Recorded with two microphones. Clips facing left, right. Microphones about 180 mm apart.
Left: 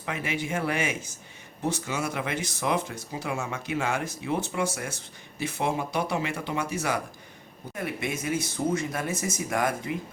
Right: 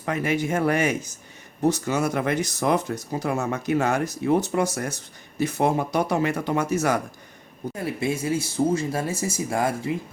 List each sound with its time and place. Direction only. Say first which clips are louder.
0.0 s speech: right 7 dB; 45° right (ahead or behind)
7.8 s speech: right 5 dB; 30° right (ahead or behind)